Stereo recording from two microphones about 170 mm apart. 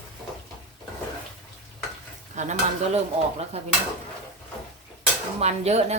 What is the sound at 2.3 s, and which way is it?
Speech, 40° right (ahead or behind).